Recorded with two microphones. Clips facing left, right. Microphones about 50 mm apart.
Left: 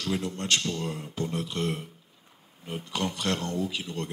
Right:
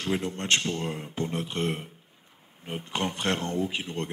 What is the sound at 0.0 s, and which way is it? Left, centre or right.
A man's voice, right.